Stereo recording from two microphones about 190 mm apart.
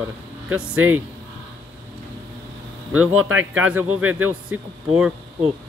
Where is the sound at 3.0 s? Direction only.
90° right.